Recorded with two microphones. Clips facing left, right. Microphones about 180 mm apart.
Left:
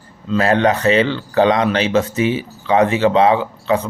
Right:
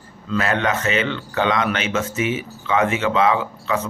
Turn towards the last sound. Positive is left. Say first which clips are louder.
# left 5 dB
turn(degrees=30)  # may be behind; listen again after turning